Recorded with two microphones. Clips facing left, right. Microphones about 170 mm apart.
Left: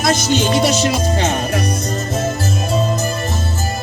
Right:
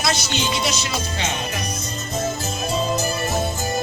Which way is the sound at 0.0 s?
50° left (ahead or behind).